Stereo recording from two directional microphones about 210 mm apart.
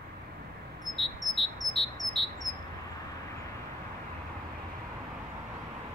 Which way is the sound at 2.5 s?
40° right (ahead or behind).